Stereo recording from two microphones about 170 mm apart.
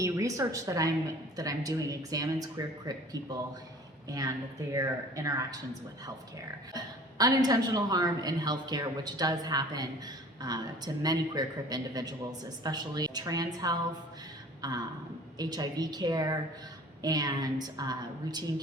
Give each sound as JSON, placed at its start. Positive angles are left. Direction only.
{"t": 0.0, "sound": "a man's voice", "side_deg": -20}
{"t": 4.7, "sound": "a man's voice", "side_deg": -20}
{"t": 6.7, "sound": "a man's voice", "side_deg": -25}